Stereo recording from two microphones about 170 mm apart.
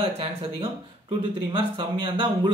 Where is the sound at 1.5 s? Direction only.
30° right (ahead or behind).